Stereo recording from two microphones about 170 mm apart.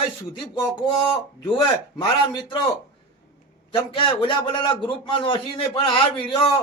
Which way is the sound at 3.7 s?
30° left (ahead or behind).